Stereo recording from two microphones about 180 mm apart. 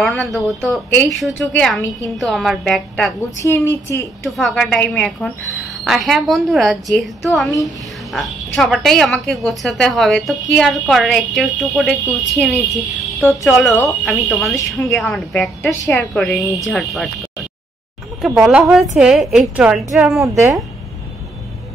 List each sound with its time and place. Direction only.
0.0 s speech: centre (ahead or behind)
3.4 s a woman's voice: 15° left (ahead or behind)
4.3 s speech: centre (ahead or behind)
15.8 s a woman's voice: 15° left (ahead or behind)
16.1 s speech: centre (ahead or behind)
20.3 s speech: 15° right (ahead or behind)